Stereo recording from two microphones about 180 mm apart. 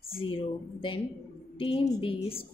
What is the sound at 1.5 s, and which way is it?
Speech, 30° left (ahead or behind).